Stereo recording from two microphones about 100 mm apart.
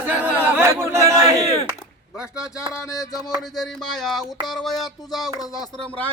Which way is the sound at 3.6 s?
Centre (ahead or behind).